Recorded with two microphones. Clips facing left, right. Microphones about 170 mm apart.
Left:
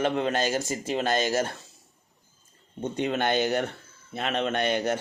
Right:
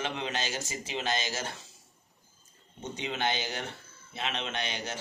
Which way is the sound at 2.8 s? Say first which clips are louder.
Left 6 dB; 55° left (ahead or behind).